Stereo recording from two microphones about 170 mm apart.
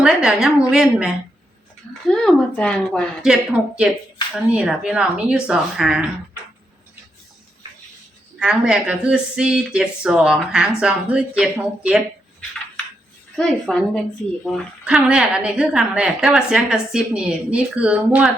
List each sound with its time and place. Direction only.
0.0 s a woman's voice: 5° right (ahead or behind)
4.5 s a woman's voice: 5° right (ahead or behind)
8.4 s a woman's voice: 5° right (ahead or behind)
13.3 s a woman's voice: 5° left (ahead or behind)